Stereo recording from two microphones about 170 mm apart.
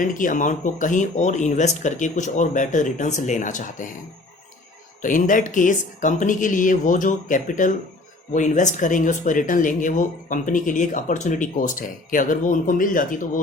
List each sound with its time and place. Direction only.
0.0 s speech: 50° left (ahead or behind)
5.0 s speech: 50° left (ahead or behind)